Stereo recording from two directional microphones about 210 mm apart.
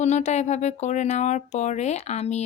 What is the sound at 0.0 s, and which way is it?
Speech, 35° left (ahead or behind).